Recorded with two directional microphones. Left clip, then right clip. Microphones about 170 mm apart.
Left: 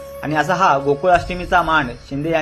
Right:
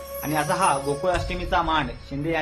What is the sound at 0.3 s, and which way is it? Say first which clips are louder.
Speech: left 7 dB; 20° left (ahead or behind).